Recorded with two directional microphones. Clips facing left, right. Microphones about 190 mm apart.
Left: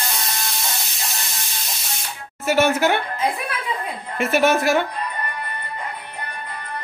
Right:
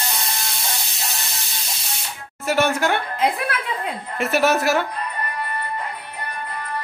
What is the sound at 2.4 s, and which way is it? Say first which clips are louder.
Speech: left 2 dB; centre (ahead or behind).